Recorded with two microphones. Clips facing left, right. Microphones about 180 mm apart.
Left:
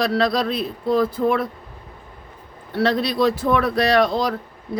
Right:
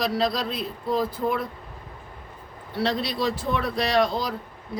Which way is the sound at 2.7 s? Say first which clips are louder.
Left 6 dB; 65° left (ahead or behind).